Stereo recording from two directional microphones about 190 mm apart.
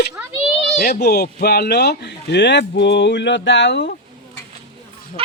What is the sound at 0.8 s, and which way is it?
Speech, 50° left (ahead or behind).